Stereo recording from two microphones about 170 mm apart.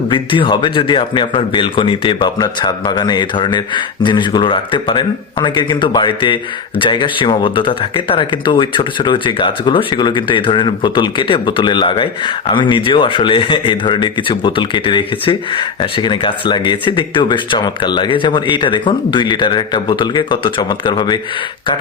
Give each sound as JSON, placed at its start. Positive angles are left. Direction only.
{"t": 0.1, "sound": "a man's voice", "side_deg": 30}